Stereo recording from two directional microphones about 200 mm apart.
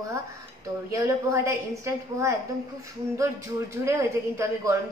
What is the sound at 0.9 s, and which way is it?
A woman's voice, 15° right (ahead or behind).